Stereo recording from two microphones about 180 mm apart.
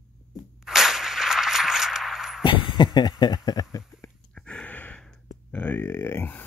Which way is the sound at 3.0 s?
25° left (ahead or behind).